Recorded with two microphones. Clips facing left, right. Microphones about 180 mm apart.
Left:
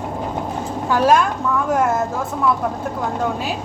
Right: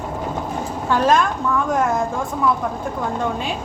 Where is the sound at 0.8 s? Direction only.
10° left (ahead or behind).